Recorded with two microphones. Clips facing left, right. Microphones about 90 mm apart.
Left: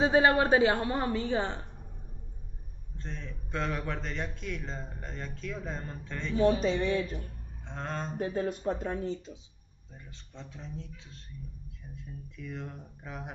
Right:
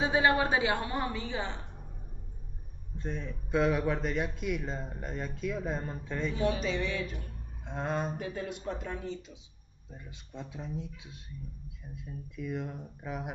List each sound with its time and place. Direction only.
0.0 s a woman's voice: 35° left (ahead or behind)
3.0 s a man's voice: 10° right (ahead or behind)
6.3 s a woman's voice: 35° left (ahead or behind)
7.6 s a man's voice: 10° right (ahead or behind)
8.2 s a woman's voice: 35° left (ahead or behind)
9.9 s a man's voice: 15° right (ahead or behind)